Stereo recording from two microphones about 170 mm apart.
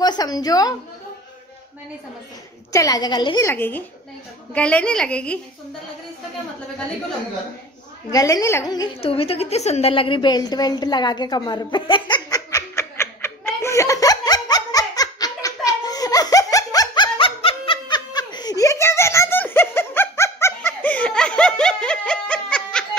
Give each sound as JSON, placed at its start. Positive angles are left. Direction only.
{"t": 0.0, "sound": "a woman's voice", "side_deg": 25}
{"t": 2.7, "sound": "a woman's voice", "side_deg": 20}
{"t": 3.4, "sound": "a woman's voice", "side_deg": 10}
{"t": 8.1, "sound": "a woman's voice", "side_deg": 20}
{"t": 9.0, "sound": "a sound", "side_deg": 35}